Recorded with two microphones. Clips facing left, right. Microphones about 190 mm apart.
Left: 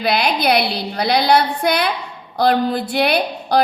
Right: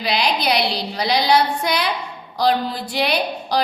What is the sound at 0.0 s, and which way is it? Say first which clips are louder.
A woman's voice: left 3 dB; 55° left (ahead or behind).